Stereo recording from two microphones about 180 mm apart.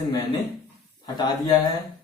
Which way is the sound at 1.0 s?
20° left (ahead or behind).